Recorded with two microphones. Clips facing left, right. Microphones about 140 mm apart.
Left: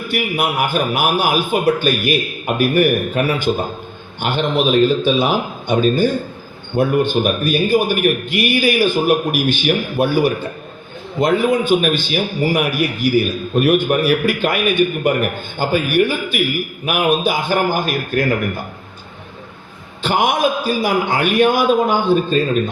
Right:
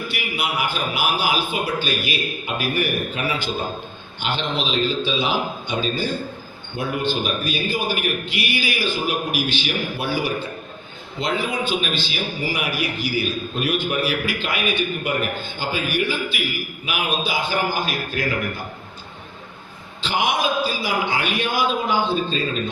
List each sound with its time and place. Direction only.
0.1 s a man's voice: 50° left (ahead or behind)
20.0 s a man's voice: 50° left (ahead or behind)